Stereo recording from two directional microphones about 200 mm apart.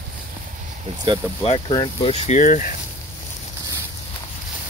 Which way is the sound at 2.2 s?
40° left (ahead or behind).